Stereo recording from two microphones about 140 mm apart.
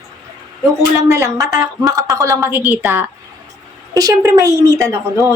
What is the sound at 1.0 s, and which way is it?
A woman's voice, 20° right (ahead or behind).